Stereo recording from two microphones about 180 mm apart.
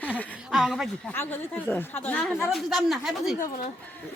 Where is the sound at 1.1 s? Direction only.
10° left (ahead or behind).